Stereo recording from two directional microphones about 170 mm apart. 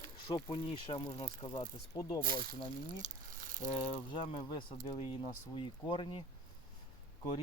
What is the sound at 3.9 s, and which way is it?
Speech, 35° left (ahead or behind).